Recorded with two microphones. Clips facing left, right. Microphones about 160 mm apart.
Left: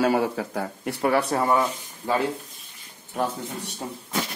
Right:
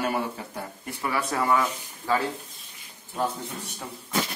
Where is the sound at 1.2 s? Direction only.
30° left (ahead or behind).